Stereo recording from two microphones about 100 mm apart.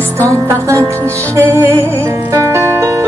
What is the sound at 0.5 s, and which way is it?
Music, 30° right (ahead or behind).